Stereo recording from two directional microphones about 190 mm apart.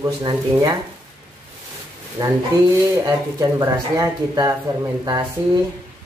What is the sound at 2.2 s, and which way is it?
Speech, 20° right (ahead or behind).